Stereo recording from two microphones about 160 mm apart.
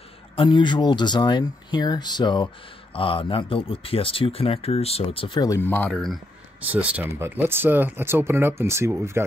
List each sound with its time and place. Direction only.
0.4 s speech: 30° left (ahead or behind)
5.6 s speech: 10° left (ahead or behind)
6.7 s speech: 10° right (ahead or behind)